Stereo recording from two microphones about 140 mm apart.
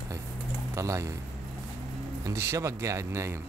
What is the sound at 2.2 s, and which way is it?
Speech, 20° right (ahead or behind).